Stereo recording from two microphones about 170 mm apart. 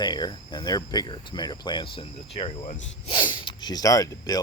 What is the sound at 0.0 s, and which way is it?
Speech, 25° left (ahead or behind).